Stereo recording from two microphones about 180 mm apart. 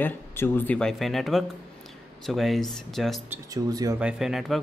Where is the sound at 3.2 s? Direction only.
20° right (ahead or behind).